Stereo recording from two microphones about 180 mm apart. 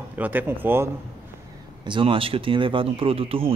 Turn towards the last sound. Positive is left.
turn(degrees=-30)  # may be behind; listen again after turning